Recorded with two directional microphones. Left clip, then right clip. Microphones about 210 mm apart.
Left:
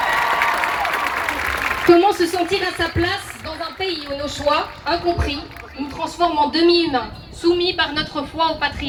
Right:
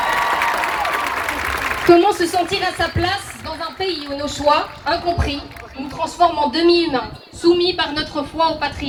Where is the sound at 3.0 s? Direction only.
50° left (ahead or behind).